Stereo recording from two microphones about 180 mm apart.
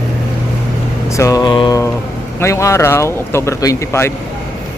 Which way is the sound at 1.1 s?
20° left (ahead or behind).